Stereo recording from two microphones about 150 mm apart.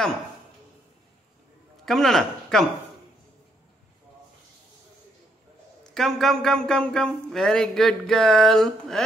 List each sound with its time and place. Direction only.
1.9 s speech: centre (ahead or behind)
5.9 s speech: centre (ahead or behind)